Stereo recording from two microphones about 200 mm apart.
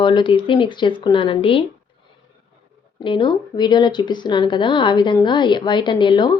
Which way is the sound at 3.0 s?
25° left (ahead or behind).